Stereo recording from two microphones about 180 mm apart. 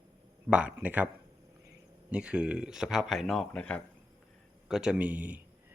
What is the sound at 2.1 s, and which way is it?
A man's voice, 5° right (ahead or behind).